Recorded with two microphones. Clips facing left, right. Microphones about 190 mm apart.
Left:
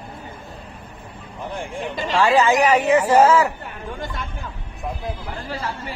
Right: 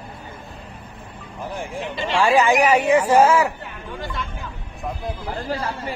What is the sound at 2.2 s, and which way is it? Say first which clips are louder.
Speech: even; 15° right (ahead or behind).